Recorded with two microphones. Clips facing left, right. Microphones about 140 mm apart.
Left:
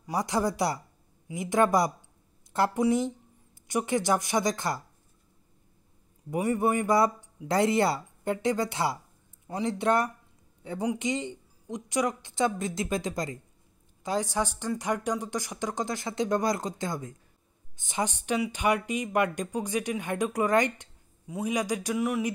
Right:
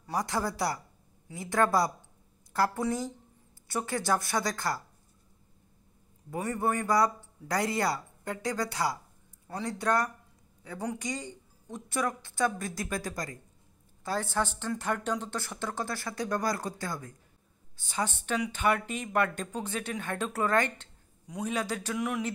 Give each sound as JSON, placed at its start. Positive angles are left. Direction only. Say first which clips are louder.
{"t": 0.0, "sound": "speech", "louder": "left 4 dB", "side_deg": 15}
{"t": 6.3, "sound": "speech", "louder": "left 4 dB", "side_deg": 15}